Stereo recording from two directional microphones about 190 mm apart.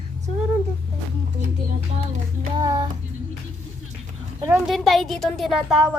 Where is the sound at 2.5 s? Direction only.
20° right (ahead or behind).